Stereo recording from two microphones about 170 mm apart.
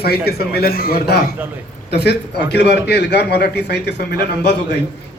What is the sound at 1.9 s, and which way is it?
A man's voice, 75° left (ahead or behind).